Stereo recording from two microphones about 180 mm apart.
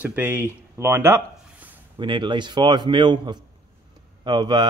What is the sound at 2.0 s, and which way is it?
A man's voice, 25° right (ahead or behind).